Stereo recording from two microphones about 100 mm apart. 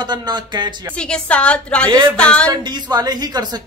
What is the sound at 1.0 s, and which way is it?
A woman's voice, 10° left (ahead or behind).